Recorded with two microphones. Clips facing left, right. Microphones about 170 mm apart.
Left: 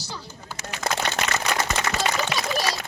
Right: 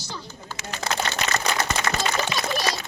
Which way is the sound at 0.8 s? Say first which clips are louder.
Left 1 dB; 35° right (ahead or behind).